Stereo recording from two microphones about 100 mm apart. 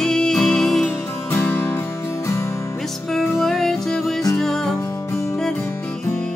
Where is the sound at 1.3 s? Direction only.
20° left (ahead or behind).